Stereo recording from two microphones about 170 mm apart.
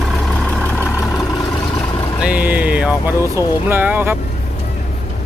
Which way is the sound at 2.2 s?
10° right (ahead or behind).